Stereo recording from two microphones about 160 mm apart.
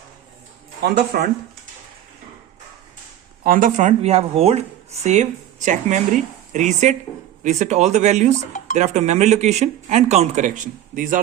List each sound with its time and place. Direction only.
0.8 s speech: 85° right
3.4 s speech: 60° right (ahead or behind)
8.4 s speech: 50° left (ahead or behind)
8.7 s speech: 45° right (ahead or behind)